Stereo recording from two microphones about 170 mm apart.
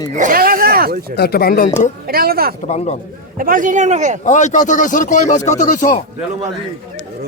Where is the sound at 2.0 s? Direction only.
60° right (ahead or behind).